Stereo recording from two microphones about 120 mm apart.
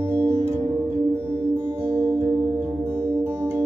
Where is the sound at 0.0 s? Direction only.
20° right (ahead or behind).